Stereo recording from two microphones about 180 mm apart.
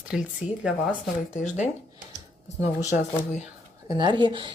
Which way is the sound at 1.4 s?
40° left (ahead or behind).